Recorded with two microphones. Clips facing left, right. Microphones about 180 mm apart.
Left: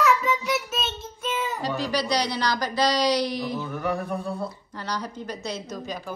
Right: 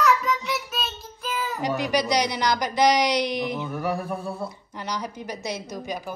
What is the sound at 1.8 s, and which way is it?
Speech, 20° right (ahead or behind).